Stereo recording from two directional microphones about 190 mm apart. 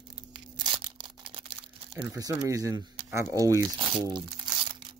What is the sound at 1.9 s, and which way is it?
Speech, 10° right (ahead or behind).